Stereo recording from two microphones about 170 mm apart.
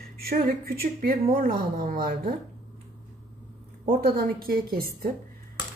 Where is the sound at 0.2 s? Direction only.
65° right (ahead or behind).